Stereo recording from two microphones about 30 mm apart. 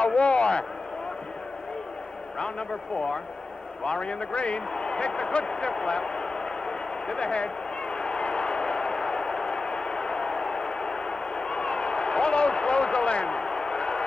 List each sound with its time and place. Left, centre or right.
0.0 s a sound: left
3.8 s a man's voice: left
7.2 s run: left